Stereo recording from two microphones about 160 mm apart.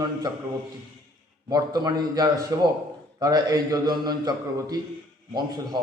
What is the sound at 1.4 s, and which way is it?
A man's voice, 25° right (ahead or behind).